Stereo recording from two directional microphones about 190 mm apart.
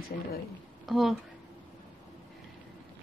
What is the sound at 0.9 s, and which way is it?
Speech, centre (ahead or behind).